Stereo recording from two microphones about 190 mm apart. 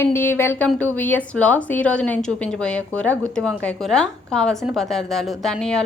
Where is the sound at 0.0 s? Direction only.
10° left (ahead or behind).